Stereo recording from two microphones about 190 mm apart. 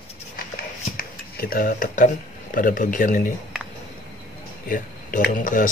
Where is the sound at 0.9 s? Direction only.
50° left (ahead or behind).